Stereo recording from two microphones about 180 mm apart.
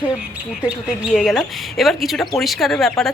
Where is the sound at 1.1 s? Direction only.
Centre (ahead or behind).